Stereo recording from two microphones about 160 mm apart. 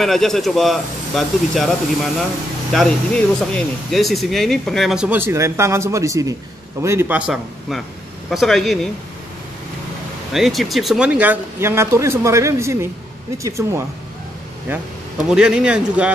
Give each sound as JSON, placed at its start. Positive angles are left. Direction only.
{"t": 0.0, "sound": "speech", "side_deg": 0}
{"t": 2.7, "sound": "speech", "side_deg": 5}
{"t": 10.3, "sound": "speech", "side_deg": 0}
{"t": 15.2, "sound": "speech", "side_deg": -5}